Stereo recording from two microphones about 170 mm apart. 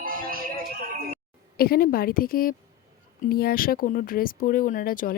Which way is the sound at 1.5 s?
65° left (ahead or behind).